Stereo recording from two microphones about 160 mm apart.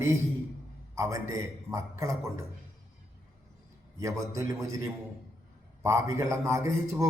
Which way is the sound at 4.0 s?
20° right (ahead or behind).